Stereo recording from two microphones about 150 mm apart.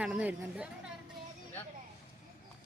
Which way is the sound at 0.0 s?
10° right (ahead or behind).